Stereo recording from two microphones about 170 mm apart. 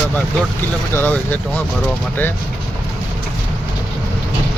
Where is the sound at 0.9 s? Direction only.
10° left (ahead or behind).